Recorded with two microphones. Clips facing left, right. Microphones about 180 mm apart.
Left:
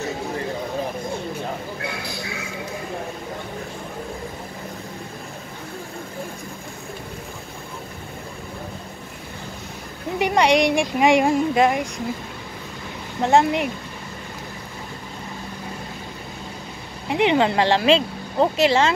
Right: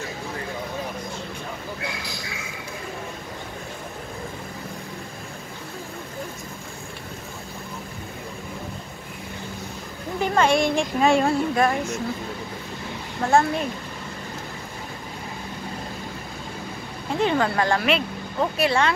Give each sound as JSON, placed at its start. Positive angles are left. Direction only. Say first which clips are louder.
{"t": 10.1, "sound": "speech", "louder": "left 2 dB", "side_deg": 15}
{"t": 13.2, "sound": "speech", "louder": "left 3 dB", "side_deg": 20}
{"t": 17.1, "sound": "speech", "louder": "left 4 dB", "side_deg": 20}